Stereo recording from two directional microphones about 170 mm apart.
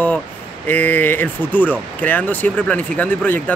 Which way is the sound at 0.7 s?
10° left (ahead or behind).